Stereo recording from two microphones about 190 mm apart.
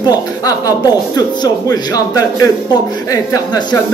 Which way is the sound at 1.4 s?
20° left (ahead or behind).